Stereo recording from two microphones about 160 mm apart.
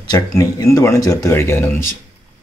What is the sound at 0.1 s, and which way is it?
Speech, 20° left (ahead or behind).